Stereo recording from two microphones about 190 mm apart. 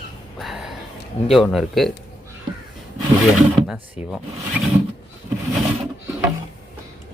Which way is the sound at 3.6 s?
5° right (ahead or behind).